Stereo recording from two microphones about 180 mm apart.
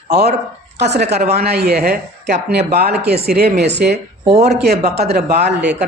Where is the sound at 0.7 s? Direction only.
70° right (ahead or behind).